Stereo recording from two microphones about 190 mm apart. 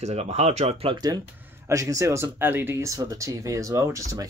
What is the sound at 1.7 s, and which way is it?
Speech, 15° right (ahead or behind).